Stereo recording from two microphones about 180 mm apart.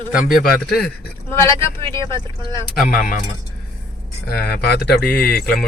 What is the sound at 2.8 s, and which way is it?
Speech, 50° left (ahead or behind).